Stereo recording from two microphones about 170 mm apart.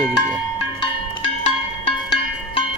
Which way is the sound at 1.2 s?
40° left (ahead or behind).